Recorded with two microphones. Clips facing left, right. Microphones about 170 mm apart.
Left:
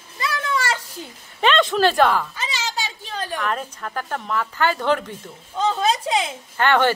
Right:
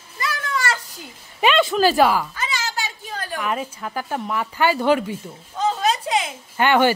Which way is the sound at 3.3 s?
5° right (ahead or behind).